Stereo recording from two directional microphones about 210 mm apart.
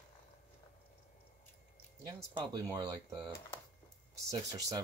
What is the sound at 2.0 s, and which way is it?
Speech, 20° right (ahead or behind).